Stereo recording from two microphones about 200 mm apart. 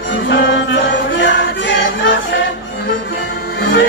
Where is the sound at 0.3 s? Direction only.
65° left (ahead or behind).